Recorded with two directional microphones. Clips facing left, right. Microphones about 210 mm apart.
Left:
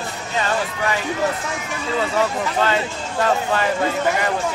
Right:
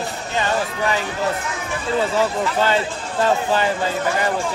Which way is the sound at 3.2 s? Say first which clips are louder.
Right 1 dB; 30° right (ahead or behind).